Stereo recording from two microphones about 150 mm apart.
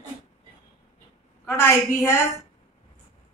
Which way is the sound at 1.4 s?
15° left (ahead or behind).